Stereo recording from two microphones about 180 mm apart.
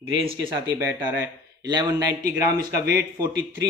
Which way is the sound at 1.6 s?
25° right (ahead or behind).